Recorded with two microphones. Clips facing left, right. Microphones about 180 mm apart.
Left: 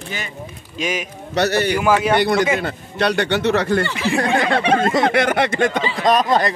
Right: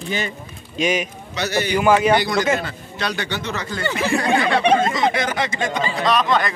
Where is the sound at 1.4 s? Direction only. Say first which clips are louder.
Left 5 dB; 65° left (ahead or behind).